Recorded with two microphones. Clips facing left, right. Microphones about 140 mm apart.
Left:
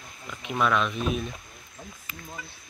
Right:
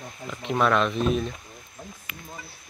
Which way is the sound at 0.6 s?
Centre (ahead or behind).